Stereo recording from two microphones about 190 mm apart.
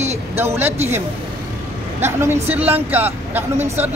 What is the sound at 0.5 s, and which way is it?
Speech, 10° right (ahead or behind).